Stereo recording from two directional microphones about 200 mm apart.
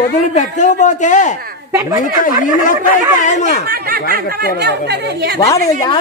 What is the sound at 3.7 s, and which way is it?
Speech, 50° right (ahead or behind).